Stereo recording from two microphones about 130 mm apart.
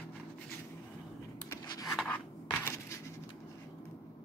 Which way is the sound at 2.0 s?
15° left (ahead or behind).